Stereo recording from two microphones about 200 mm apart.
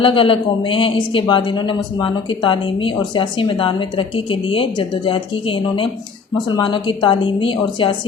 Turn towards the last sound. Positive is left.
turn(degrees=25)  # may be behind; listen again after turning